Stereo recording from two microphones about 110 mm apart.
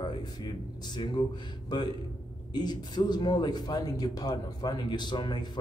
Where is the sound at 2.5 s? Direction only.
40° left (ahead or behind).